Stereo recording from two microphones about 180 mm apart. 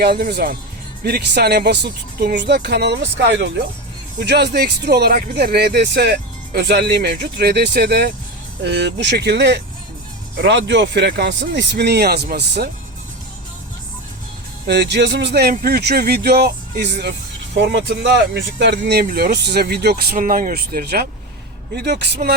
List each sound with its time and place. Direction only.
0.0 s speech: 60° right (ahead or behind)
8.6 s speech: 75° right (ahead or behind)
10.3 s speech: 80° right; by 12.7 s 65° right (ahead or behind)
14.7 s speech: 70° right (ahead or behind)
19.0 s speech: 55° right (ahead or behind)